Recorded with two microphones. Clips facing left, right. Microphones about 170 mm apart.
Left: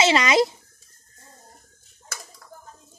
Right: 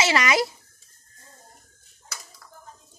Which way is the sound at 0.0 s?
20° left (ahead or behind).